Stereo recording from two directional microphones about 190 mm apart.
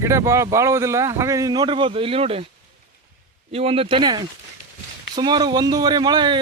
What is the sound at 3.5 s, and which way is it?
A man's voice, 30° right (ahead or behind).